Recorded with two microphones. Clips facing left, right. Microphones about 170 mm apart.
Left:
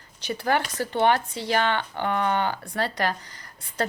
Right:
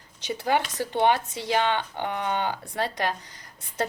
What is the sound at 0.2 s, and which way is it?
Speech, 20° right (ahead or behind).